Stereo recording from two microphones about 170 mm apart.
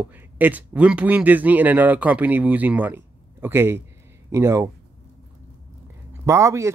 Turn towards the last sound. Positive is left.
turn(degrees=-20)  # may be behind; listen again after turning